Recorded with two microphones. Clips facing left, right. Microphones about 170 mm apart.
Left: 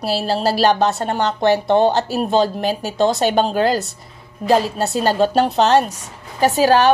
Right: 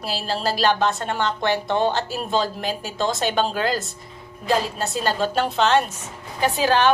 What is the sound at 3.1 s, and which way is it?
Speech, centre (ahead or behind).